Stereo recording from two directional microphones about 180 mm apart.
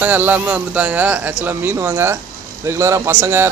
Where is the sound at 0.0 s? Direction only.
10° right (ahead or behind).